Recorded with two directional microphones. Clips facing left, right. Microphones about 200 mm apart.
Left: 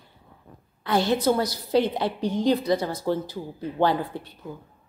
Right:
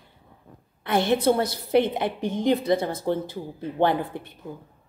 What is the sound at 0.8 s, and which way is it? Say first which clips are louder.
A woman's voice: right 1 dB; 25° right (ahead or behind).